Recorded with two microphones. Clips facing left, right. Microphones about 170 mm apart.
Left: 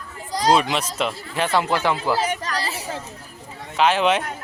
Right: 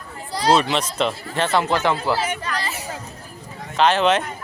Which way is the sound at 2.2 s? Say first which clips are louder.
Left 1 dB; 40° left (ahead or behind).